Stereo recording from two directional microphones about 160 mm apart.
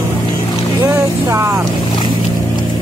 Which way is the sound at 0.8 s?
15° right (ahead or behind).